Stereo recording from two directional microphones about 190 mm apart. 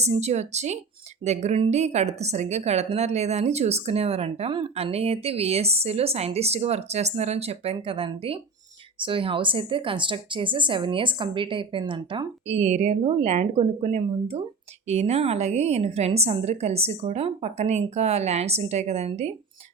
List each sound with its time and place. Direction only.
0.0 s a woman's voice: 35° right (ahead or behind)